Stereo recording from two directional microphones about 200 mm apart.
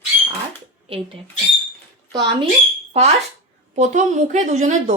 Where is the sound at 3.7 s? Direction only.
35° right (ahead or behind).